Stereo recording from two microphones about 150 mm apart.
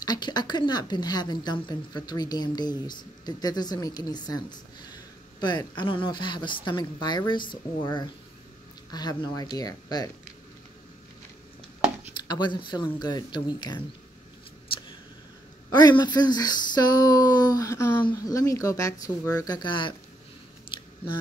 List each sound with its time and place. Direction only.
0.0 s a woman's voice: 30° left (ahead or behind)
12.2 s a woman's voice: 30° left (ahead or behind)
16.0 s a woman's voice: 30° left (ahead or behind)
20.7 s scissors: 35° left (ahead or behind)